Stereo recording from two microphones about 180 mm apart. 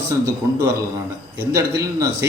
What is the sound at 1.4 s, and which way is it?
Speech, 15° right (ahead or behind).